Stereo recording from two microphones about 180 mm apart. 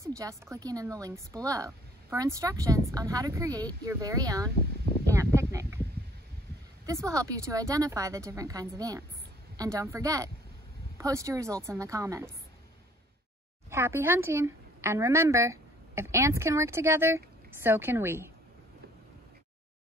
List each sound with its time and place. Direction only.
0.0 s a woman's voice: 20° right (ahead or behind)
5.1 s a sound: 15° right (ahead or behind)
6.9 s a woman's voice: 15° right (ahead or behind)
13.7 s a woman's voice: 15° right (ahead or behind)